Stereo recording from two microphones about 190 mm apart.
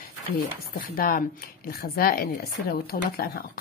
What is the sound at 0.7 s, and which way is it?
Speech, 50° left (ahead or behind).